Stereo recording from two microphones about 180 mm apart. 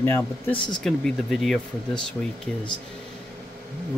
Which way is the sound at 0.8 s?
5° left (ahead or behind).